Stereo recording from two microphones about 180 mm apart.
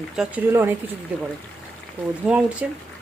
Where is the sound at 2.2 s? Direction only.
5° right (ahead or behind).